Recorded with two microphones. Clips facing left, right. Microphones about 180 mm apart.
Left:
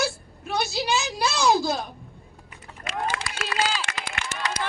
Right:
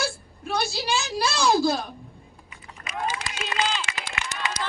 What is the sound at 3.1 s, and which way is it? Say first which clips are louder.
Run: left 1 dB; 90° left.